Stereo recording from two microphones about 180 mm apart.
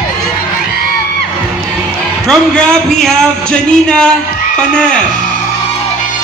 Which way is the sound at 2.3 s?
5° left (ahead or behind).